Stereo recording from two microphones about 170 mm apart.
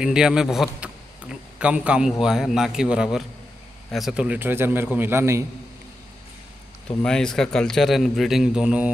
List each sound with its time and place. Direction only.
0.0 s a man's voice: 5° right (ahead or behind)
7.0 s a man's voice: 5° left (ahead or behind)